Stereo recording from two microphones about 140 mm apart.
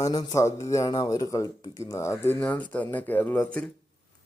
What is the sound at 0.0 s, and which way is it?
A man's voice, 30° left (ahead or behind).